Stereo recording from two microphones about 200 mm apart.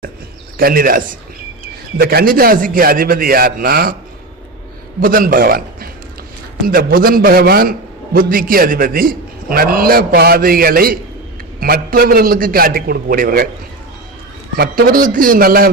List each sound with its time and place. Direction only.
0.5 s a man's voice: 45° right (ahead or behind)
4.9 s a man's voice: 45° right (ahead or behind)
14.5 s a man's voice: 45° right (ahead or behind)